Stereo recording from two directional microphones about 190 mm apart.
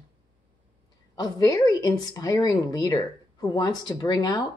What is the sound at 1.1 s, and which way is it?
A woman's voice, 20° left (ahead or behind).